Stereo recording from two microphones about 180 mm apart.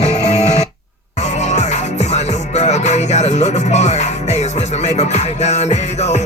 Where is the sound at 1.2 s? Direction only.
40° left (ahead or behind).